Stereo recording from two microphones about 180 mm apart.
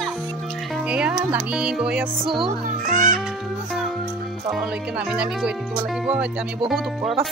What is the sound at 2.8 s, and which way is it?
Speech, 45° right (ahead or behind).